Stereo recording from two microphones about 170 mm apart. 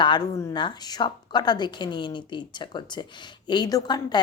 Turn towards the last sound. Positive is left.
turn(degrees=25)  # may be behind; listen again after turning